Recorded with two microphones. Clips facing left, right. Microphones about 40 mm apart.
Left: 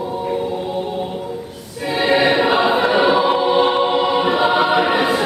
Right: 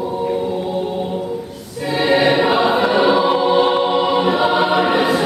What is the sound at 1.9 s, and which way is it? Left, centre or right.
Choir, centre.